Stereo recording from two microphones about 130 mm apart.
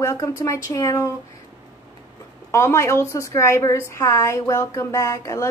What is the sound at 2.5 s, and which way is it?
A woman's voice, 20° left (ahead or behind).